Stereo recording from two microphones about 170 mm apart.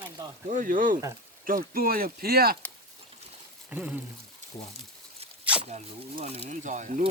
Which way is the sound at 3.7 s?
10° right (ahead or behind).